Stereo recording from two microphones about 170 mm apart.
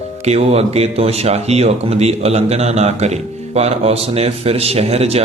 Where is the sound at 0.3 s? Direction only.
40° right (ahead or behind).